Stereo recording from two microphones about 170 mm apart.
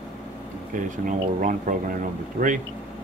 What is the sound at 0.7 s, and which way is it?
Speech, 50° right (ahead or behind).